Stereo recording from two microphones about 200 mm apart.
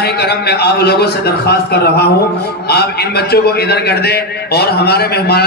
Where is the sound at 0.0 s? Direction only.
55° left (ahead or behind).